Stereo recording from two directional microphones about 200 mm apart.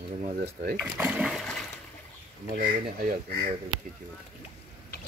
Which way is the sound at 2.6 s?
50° right (ahead or behind).